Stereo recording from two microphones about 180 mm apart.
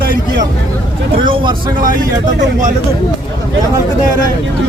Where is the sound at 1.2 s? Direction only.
25° right (ahead or behind).